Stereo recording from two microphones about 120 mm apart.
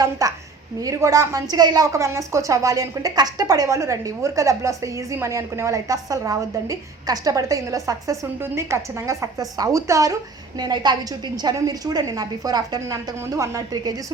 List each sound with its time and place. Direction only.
0.0 s a woman's voice: 30° right (ahead or behind)